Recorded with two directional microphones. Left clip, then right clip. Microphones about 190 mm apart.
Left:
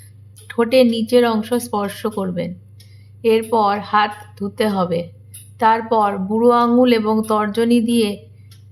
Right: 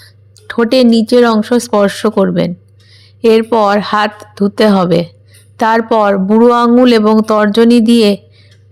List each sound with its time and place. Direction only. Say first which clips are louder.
0.0 s a woman's voice: right 10 dB; 35° right (ahead or behind)